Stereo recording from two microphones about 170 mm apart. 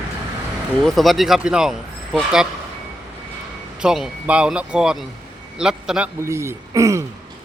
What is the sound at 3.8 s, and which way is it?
A man's voice, 5° right (ahead or behind).